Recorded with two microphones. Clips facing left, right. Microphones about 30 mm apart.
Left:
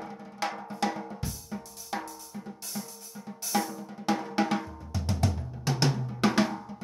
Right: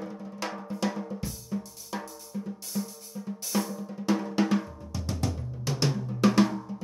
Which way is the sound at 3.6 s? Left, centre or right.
Centre.